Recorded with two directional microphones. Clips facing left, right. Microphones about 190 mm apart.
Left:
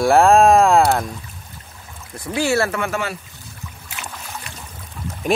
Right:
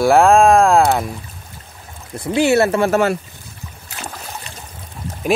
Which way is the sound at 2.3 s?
20° right (ahead or behind).